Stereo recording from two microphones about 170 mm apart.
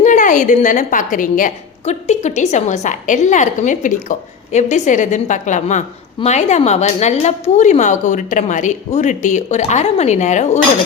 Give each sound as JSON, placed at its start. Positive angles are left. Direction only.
{"t": 0.0, "sound": "a woman's voice", "side_deg": 50}